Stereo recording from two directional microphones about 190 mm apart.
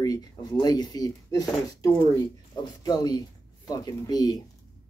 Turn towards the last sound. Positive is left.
turn(degrees=20)  # may be behind; listen again after turning